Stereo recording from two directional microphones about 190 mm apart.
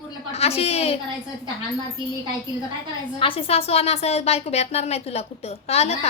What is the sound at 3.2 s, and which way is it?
A woman's voice, 30° left (ahead or behind).